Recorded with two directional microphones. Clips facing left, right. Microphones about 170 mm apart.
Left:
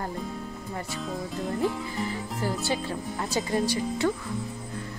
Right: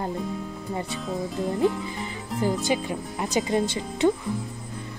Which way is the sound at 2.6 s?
15° right (ahead or behind).